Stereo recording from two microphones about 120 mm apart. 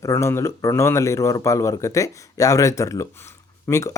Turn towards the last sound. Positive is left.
turn(degrees=20)  # may be behind; listen again after turning